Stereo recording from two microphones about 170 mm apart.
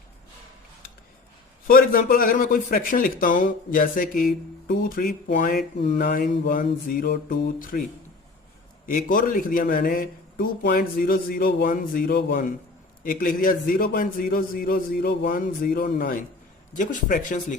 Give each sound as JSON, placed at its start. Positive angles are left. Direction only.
{"t": 1.6, "sound": "speech", "side_deg": 60}
{"t": 8.9, "sound": "speech", "side_deg": 55}